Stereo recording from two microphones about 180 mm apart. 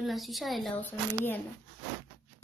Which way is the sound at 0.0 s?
Centre (ahead or behind).